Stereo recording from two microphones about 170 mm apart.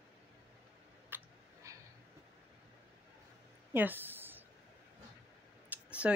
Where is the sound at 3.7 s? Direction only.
10° right (ahead or behind).